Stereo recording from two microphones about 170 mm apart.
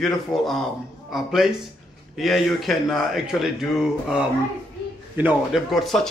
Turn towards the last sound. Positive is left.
turn(degrees=0)  # may be behind; listen again after turning